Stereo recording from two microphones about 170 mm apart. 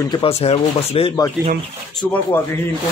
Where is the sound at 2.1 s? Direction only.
15° left (ahead or behind).